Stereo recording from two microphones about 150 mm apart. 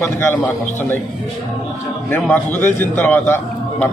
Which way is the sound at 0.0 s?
15° left (ahead or behind).